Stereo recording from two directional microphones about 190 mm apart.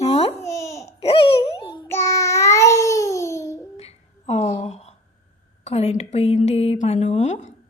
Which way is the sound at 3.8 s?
35° left (ahead or behind).